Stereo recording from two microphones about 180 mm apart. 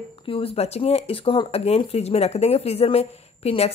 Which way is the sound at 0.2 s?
30° left (ahead or behind).